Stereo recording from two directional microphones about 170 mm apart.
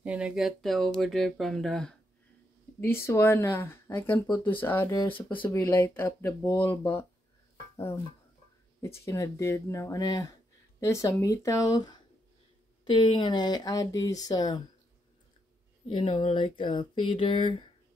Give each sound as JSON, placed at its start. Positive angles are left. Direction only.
{"t": 0.0, "sound": "speech", "side_deg": -5}
{"t": 8.8, "sound": "speech", "side_deg": 15}
{"t": 15.9, "sound": "speech", "side_deg": 30}